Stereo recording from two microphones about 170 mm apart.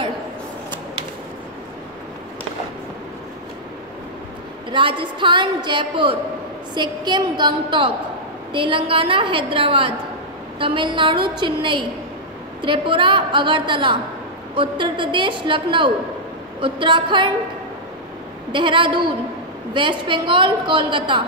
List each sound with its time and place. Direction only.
4.6 s a woman's voice: 30° right (ahead or behind)
18.5 s a woman's voice: 30° right (ahead or behind)